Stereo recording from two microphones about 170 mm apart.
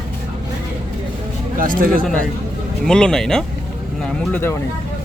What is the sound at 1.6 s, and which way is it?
Speech, 55° right (ahead or behind).